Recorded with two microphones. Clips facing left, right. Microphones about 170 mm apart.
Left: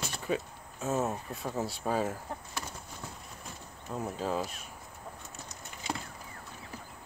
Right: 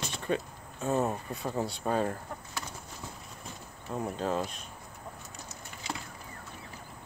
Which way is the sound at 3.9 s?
Centre (ahead or behind).